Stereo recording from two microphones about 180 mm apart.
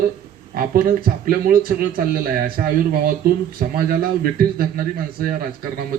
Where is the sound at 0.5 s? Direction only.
55° right (ahead or behind).